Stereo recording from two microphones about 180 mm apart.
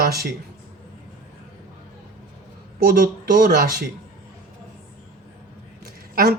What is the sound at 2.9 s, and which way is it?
Speech, 50° right (ahead or behind).